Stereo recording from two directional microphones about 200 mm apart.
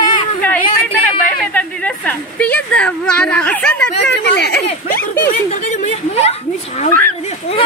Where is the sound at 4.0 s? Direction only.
55° left (ahead or behind).